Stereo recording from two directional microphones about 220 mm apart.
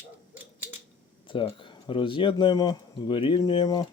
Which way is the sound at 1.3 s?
20° left (ahead or behind).